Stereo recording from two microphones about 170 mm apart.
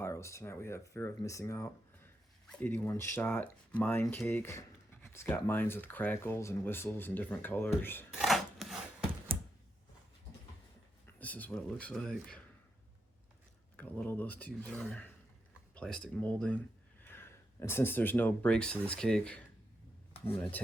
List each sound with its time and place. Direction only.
0.0 s speech: 15° left (ahead or behind)
8.1 s chopping: centre (ahead or behind)
11.0 s speech: 10° left (ahead or behind)
13.7 s speech: 10° left (ahead or behind)